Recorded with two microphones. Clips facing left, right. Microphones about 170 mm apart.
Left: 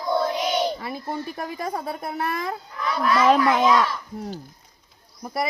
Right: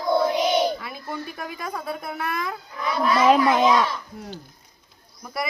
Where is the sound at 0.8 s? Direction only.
30° left (ahead or behind).